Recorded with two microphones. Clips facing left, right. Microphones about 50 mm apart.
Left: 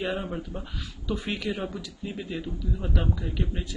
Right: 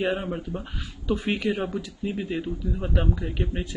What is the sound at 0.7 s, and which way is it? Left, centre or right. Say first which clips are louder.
Speech: right 4 dB; right.